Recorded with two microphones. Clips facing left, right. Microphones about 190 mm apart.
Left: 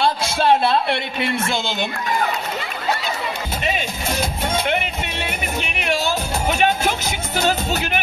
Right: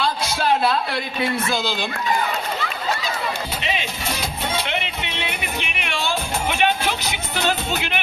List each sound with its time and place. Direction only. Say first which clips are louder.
0.0 s speech: left 4 dB; 25° left (ahead or behind)
3.6 s music: left 5 dB; 50° left (ahead or behind)